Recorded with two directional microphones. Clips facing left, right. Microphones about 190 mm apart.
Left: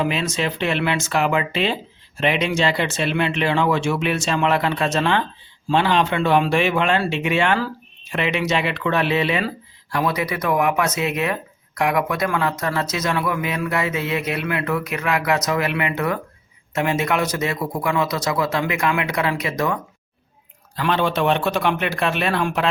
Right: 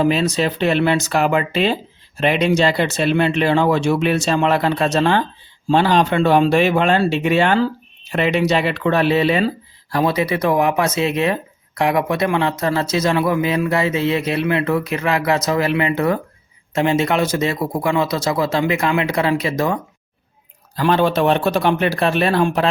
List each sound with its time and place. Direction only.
0.0 s speech: 35° right (ahead or behind)